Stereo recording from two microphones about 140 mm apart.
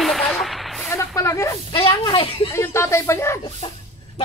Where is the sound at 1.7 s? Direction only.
40° left (ahead or behind).